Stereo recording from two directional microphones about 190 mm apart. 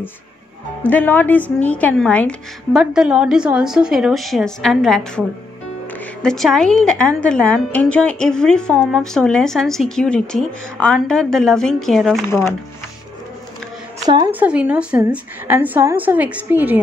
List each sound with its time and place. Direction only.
0.8 s a woman's voice: 10° left (ahead or behind)
6.2 s a woman's voice: centre (ahead or behind)
12.3 s speech: 15° left (ahead or behind)
14.0 s a woman's voice: 20° right (ahead or behind)
14.3 s a woman's voice: 5° right (ahead or behind)